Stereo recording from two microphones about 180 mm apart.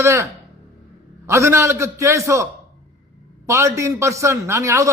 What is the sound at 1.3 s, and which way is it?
Speech, 15° right (ahead or behind).